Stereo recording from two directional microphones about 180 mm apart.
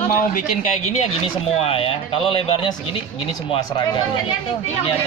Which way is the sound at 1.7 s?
30° left (ahead or behind).